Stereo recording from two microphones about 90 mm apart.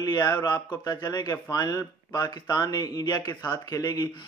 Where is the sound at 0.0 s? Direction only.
40° left (ahead or behind).